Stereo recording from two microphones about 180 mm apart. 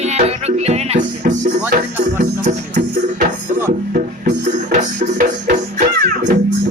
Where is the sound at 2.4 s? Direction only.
45° right (ahead or behind).